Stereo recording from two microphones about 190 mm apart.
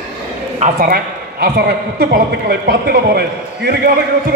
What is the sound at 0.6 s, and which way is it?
A woman's voice, 45° right (ahead or behind).